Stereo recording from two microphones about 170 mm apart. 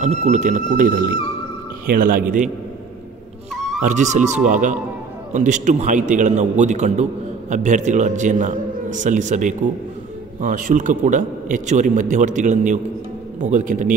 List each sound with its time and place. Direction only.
0.0 s a man's voice: 40° right (ahead or behind)
3.8 s a man's voice: 45° right (ahead or behind)